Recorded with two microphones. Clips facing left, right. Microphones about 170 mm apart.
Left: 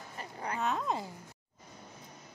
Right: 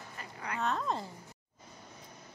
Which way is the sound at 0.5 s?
5° left (ahead or behind).